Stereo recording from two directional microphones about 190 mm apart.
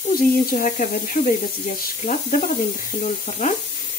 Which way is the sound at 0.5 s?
40° left (ahead or behind).